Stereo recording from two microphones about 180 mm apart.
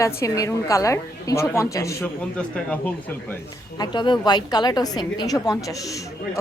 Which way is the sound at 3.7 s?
25° left (ahead or behind).